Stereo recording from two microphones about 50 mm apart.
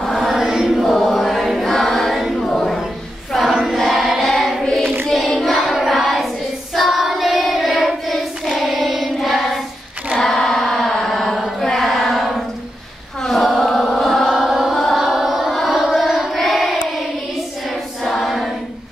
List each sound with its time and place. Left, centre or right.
0.0 s choir: centre
0.4 s choir: centre
2.5 s a sound: centre
3.7 s choir: centre
5.4 s child singing: centre
10.2 s chant: centre
11.7 s a sound: centre
13.2 s chant: centre
14.2 s chant: centre
15.0 s music: centre
15.8 s a sound: centre
18.0 s choir: centre